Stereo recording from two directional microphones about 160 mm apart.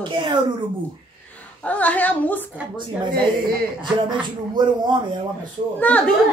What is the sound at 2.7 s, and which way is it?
Speech, 30° right (ahead or behind).